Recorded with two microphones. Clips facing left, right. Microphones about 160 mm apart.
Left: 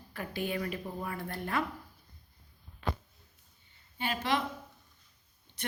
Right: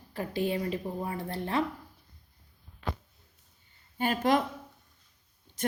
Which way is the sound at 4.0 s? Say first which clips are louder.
Right 6 dB; 45° right (ahead or behind).